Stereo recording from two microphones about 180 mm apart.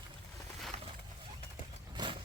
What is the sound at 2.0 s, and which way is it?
Vehicle, 25° right (ahead or behind).